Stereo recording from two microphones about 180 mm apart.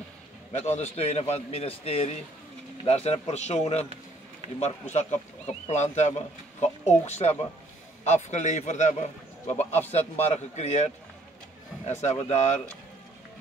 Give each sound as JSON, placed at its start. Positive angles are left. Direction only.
{"t": 0.5, "sound": "a man's voice", "side_deg": 40}